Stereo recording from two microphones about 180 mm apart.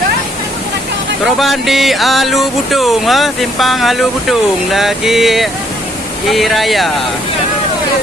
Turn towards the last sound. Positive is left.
turn(degrees=0)  # may be behind; listen again after turning